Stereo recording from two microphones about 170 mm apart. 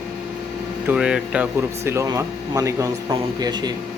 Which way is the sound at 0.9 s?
5° right (ahead or behind).